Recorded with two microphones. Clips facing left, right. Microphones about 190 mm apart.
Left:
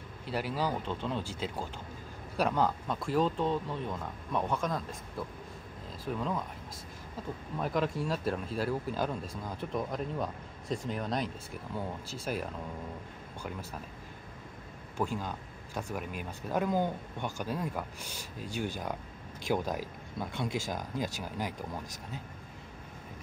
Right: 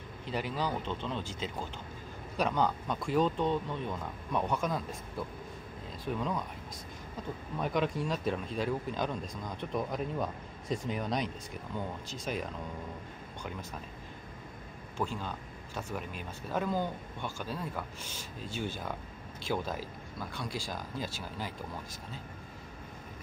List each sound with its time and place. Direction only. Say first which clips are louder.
0.3 s speech: left 1 dB; 5° left (ahead or behind)
7.5 s speech: even; centre (ahead or behind)
15.0 s speech: left 2 dB; 10° left (ahead or behind)